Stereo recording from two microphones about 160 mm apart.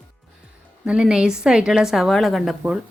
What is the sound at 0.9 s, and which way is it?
A woman's voice, 5° right (ahead or behind).